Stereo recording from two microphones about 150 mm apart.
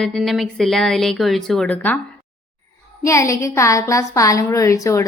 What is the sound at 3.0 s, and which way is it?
A woman's voice, 20° left (ahead or behind).